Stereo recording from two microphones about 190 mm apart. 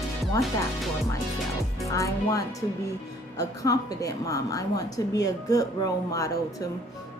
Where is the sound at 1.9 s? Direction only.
15° left (ahead or behind).